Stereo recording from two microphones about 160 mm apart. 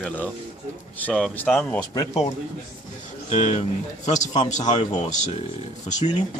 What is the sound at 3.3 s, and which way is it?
Speech, 45° left (ahead or behind).